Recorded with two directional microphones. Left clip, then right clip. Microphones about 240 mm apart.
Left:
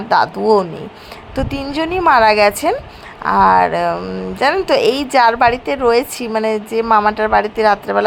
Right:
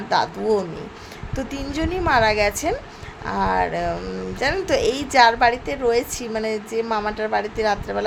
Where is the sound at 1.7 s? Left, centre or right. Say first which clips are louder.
Left 7 dB; centre.